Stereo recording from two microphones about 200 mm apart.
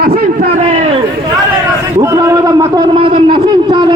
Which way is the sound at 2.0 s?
15° right (ahead or behind).